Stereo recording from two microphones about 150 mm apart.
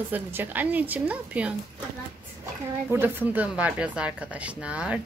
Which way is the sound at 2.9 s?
15° right (ahead or behind).